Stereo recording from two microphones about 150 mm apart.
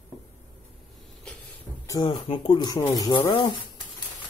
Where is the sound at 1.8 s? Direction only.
20° left (ahead or behind).